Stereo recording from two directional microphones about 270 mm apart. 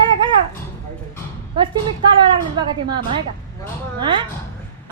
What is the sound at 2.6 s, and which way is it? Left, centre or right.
Speech, centre.